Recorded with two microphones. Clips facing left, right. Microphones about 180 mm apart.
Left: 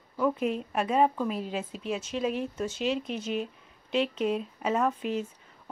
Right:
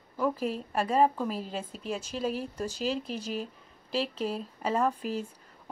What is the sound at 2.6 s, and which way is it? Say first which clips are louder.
Speech: left 1 dB; 35° right (ahead or behind).